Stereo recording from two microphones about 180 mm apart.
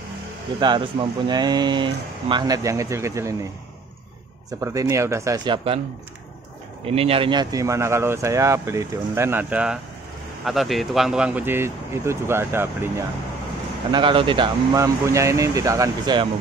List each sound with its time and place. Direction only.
0.6 s speech: 25° right (ahead or behind)
4.5 s speech: 20° right (ahead or behind)
6.9 s speech: 35° right (ahead or behind); by 12.9 s 15° right (ahead or behind)
13.9 s speech: 30° right (ahead or behind)